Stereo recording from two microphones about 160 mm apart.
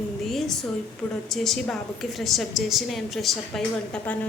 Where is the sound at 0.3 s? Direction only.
Centre (ahead or behind).